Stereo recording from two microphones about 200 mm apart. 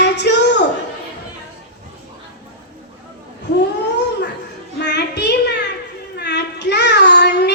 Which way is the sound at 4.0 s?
60° left (ahead or behind).